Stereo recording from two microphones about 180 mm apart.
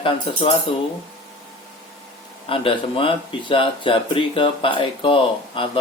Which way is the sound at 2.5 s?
30° left (ahead or behind).